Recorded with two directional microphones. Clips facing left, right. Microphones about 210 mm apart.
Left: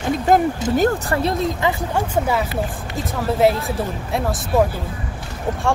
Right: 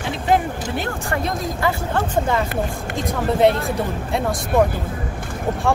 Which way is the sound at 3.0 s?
5° left (ahead or behind).